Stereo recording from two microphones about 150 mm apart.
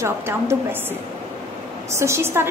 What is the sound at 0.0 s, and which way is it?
Speech, 20° right (ahead or behind).